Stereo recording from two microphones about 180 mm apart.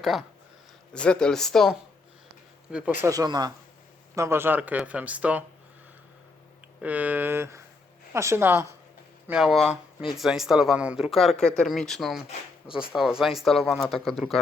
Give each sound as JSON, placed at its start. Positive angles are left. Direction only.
{"t": 0.0, "sound": "speech", "side_deg": 0}
{"t": 3.0, "sound": "speech", "side_deg": -20}
{"t": 6.8, "sound": "speech", "side_deg": -10}